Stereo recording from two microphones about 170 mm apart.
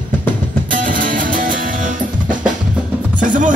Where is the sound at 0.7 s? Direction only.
50° right (ahead or behind).